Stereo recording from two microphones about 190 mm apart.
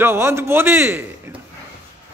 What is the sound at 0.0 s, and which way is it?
A man's voice, 15° right (ahead or behind).